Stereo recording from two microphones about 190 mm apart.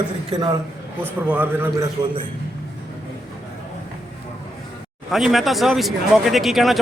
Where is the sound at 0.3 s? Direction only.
20° right (ahead or behind).